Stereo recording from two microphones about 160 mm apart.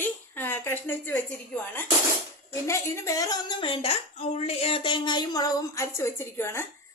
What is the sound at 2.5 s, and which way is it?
A woman's voice, 15° left (ahead or behind).